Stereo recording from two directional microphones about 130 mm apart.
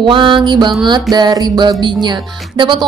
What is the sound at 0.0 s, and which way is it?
Music, 40° right (ahead or behind).